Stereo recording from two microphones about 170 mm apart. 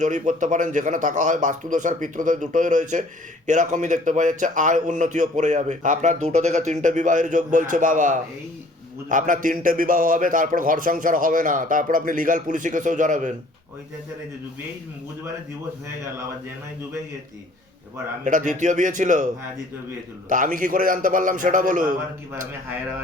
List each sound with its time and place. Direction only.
0.0 s a man's voice: 45° right (ahead or behind)
18.3 s a man's voice: 50° right (ahead or behind)
20.3 s a man's voice: 50° right (ahead or behind)